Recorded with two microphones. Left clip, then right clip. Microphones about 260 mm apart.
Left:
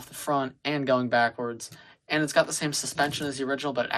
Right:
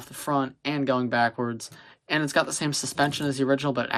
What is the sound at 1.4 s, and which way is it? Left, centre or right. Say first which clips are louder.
Speech: right 2 dB; right.